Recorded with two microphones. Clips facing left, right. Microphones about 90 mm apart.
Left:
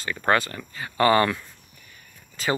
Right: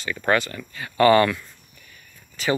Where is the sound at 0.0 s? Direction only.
30° left (ahead or behind).